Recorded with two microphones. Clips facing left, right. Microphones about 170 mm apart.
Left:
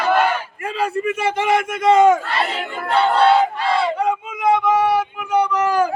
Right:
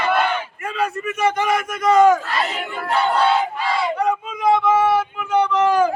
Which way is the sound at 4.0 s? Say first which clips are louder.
Even; 25° left (ahead or behind).